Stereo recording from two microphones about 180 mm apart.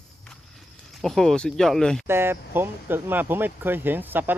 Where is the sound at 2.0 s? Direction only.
15° right (ahead or behind).